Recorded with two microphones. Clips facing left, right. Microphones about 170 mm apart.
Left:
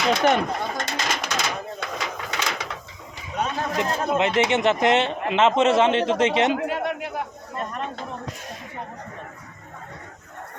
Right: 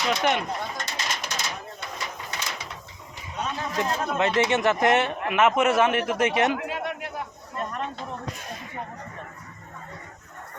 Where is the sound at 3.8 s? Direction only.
20° left (ahead or behind).